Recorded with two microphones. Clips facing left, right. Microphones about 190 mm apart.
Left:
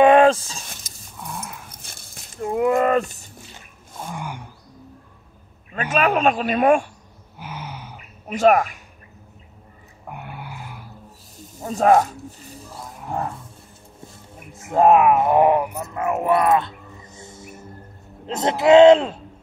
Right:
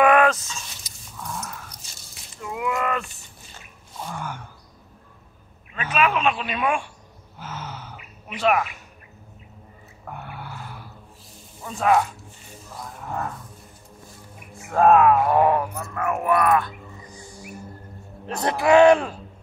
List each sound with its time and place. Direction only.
0.0 s speech: 30° left (ahead or behind)
1.2 s dog: 15° left (ahead or behind)
1.7 s a sound: 55° left (ahead or behind); by 3.3 s 40° left (ahead or behind)
4.1 s wild animals: 15° left (ahead or behind)
5.7 s a man's voice: 40° left (ahead or behind)
7.3 s a sound: 15° left (ahead or behind)
8.3 s a man's voice: 45° left (ahead or behind)
10.0 s a sound: 15° left (ahead or behind)
11.6 s speech: 40° left (ahead or behind)
14.7 s a man's voice: 20° left (ahead or behind)